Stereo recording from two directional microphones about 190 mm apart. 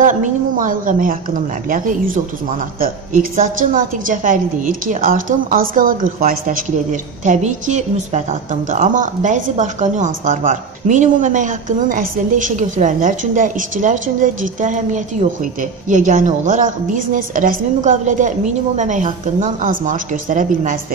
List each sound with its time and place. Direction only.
0.0 s a woman's voice: 45° right (ahead or behind)